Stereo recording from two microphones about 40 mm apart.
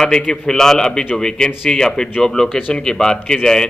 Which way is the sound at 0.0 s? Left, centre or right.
Centre.